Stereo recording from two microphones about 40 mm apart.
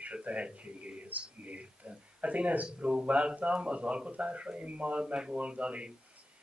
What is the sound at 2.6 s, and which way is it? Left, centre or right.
Speech, right.